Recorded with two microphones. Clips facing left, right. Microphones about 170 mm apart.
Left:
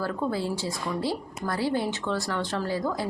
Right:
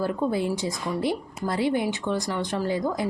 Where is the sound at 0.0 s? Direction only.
20° right (ahead or behind).